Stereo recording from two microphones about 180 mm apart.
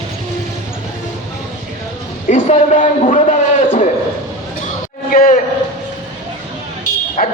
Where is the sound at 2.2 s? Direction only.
45° left (ahead or behind).